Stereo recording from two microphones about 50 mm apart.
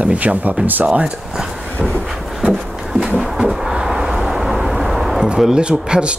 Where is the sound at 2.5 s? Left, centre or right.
Centre.